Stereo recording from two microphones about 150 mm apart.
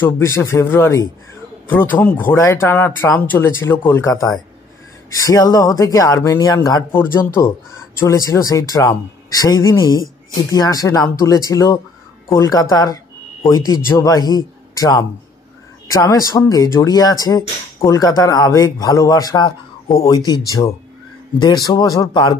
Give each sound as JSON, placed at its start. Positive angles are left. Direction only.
{"t": 0.0, "sound": "a man's voice", "side_deg": 15}